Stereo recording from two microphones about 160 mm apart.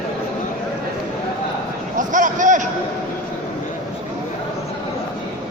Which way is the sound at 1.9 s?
55° right (ahead or behind).